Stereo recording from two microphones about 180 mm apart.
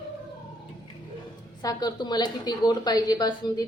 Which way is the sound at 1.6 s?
25° left (ahead or behind).